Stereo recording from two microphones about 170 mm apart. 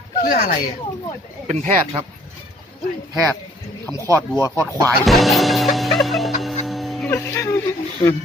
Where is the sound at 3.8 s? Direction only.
15° left (ahead or behind).